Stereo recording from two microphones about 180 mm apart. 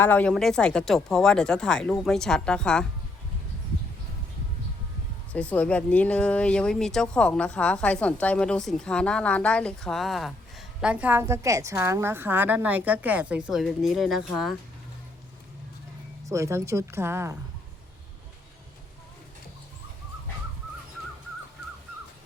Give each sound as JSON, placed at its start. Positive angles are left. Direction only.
{"t": 0.0, "sound": "speech", "side_deg": 10}
{"t": 5.3, "sound": "a woman's voice", "side_deg": 5}
{"t": 16.2, "sound": "a woman's voice", "side_deg": -15}